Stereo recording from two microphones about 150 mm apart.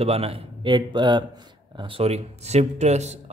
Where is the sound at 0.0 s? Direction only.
40° right (ahead or behind).